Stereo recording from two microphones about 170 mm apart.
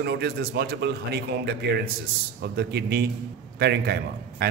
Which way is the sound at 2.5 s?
75° right (ahead or behind).